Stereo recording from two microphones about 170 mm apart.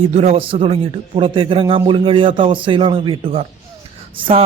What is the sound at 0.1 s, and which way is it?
A man's voice, 40° right (ahead or behind).